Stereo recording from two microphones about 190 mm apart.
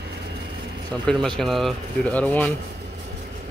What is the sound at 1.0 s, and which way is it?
Speech, centre (ahead or behind).